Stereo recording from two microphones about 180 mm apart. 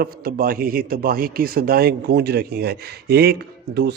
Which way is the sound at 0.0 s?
55° right (ahead or behind).